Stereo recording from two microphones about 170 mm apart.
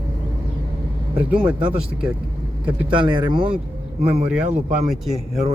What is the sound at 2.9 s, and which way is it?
Speech, 30° right (ahead or behind).